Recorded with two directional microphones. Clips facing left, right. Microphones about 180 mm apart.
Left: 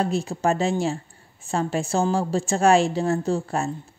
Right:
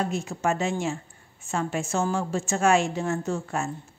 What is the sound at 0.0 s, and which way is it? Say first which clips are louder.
A woman's voice: left 4 dB; 35° left (ahead or behind).